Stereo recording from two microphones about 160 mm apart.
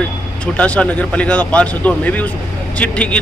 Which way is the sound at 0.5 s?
10° left (ahead or behind).